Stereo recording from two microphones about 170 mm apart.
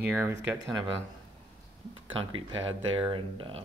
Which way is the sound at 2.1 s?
30° right (ahead or behind).